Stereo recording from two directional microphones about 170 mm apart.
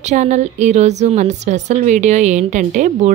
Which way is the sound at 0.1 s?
45° right (ahead or behind).